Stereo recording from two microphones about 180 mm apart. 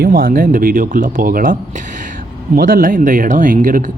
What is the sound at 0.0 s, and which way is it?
Speech, 55° right (ahead or behind).